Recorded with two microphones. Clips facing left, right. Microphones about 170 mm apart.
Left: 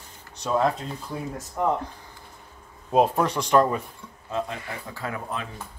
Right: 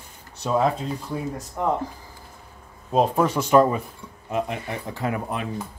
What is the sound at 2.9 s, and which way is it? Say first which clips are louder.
Speech: right 1 dB; centre (ahead or behind).